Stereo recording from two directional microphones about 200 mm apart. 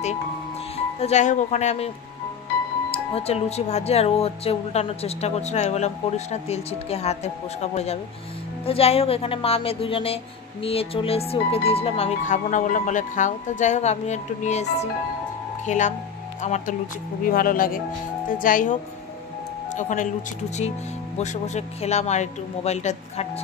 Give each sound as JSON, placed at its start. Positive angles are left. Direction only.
{"t": 0.9, "sound": "speech", "side_deg": 35}
{"t": 2.9, "sound": "speech", "side_deg": 30}